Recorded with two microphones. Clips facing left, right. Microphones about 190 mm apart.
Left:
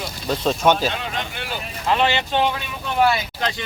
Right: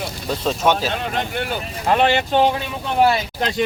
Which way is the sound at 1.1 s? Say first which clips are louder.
Right 5 dB; 50° right (ahead or behind).